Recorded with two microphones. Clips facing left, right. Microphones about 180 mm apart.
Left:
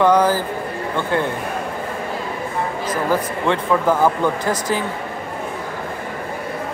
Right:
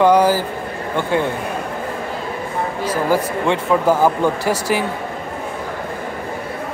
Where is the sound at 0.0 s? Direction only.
10° right (ahead or behind).